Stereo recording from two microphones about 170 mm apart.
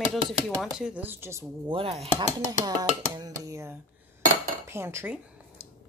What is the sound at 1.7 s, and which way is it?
Chopping, 35° right (ahead or behind).